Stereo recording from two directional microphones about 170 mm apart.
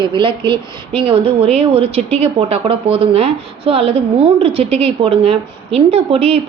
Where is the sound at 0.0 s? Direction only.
30° right (ahead or behind).